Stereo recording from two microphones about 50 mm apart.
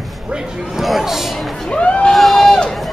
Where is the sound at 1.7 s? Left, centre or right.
Left.